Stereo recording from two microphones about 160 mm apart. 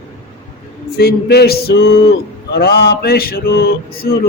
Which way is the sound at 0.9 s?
85° left.